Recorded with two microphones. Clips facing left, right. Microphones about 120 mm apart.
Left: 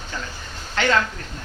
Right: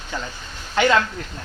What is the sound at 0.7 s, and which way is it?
Speech, 15° right (ahead or behind).